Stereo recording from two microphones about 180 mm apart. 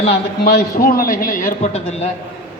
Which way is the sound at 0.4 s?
55° left (ahead or behind).